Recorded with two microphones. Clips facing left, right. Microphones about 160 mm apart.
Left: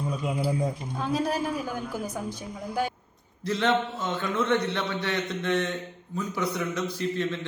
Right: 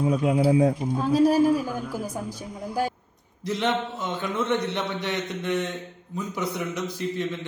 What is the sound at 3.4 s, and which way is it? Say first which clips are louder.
A man's voice: left 1 dB; 15° right (ahead or behind).